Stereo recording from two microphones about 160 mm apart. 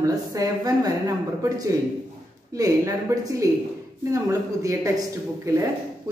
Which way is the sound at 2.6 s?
20° right (ahead or behind).